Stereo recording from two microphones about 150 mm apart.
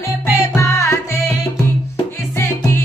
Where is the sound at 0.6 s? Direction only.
20° left (ahead or behind).